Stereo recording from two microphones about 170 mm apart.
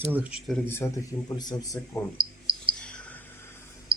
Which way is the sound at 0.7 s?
15° left (ahead or behind).